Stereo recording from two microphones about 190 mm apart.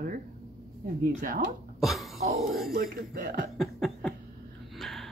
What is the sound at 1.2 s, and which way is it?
Speech, 45° right (ahead or behind).